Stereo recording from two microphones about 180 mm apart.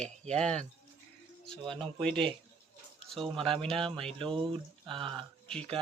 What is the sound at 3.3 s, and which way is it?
Speech, 30° right (ahead or behind).